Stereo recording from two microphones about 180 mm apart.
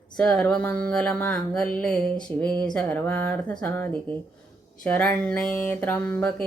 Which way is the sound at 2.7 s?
5° left (ahead or behind).